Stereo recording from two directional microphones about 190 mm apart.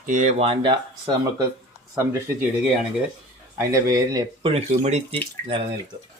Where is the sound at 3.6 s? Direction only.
15° right (ahead or behind).